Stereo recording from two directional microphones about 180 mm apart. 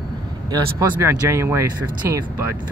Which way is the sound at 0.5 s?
15° right (ahead or behind).